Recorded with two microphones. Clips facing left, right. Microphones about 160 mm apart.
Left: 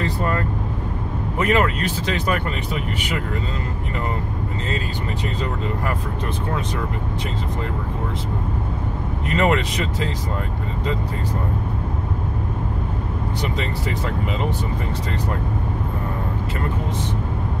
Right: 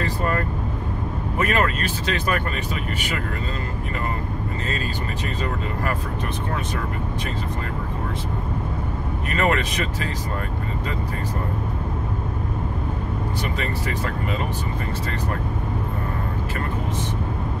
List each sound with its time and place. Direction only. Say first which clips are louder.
1.4 s speech: left 3 dB; 15° left (ahead or behind)
9.3 s speech: left 3 dB; 20° left (ahead or behind)